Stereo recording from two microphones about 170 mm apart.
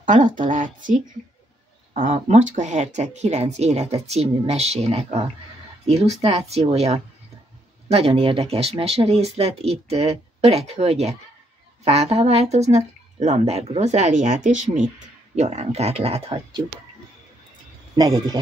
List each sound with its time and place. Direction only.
0.0 s speech: 50° right (ahead or behind)
2.0 s speech: 45° right (ahead or behind)
17.9 s speech: 25° right (ahead or behind)